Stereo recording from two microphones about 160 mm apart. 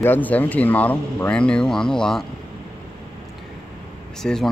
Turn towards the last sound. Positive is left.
turn(degrees=5)  # may be behind; listen again after turning